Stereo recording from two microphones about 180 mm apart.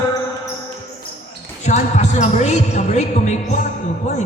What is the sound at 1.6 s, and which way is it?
Speech, 40° left (ahead or behind).